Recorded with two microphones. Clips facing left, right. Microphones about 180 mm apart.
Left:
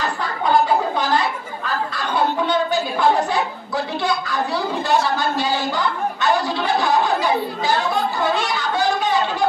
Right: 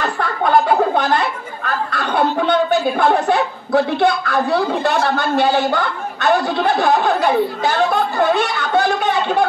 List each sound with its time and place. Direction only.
0.0 s speech: 60° right (ahead or behind)